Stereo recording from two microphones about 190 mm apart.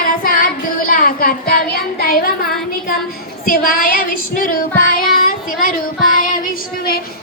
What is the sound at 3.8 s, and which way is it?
A woman's voice, 45° left (ahead or behind).